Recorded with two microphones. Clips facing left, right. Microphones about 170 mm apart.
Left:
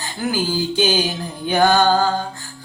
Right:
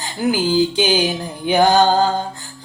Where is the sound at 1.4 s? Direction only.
15° right (ahead or behind).